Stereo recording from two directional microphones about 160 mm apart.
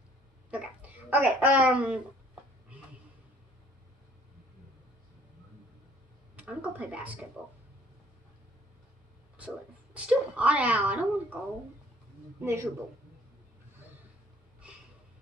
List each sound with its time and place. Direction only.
0.5 s a child's voice: 10° right (ahead or behind)
6.3 s speech: 10° right (ahead or behind)
9.9 s speech: 10° right (ahead or behind)
12.4 s speech: 15° right (ahead or behind)